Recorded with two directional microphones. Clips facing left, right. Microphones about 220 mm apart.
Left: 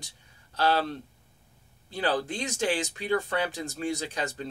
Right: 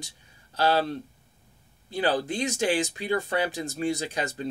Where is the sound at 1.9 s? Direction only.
10° right (ahead or behind).